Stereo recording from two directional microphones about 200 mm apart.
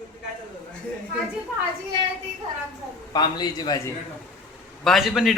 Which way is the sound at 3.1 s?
20° left (ahead or behind).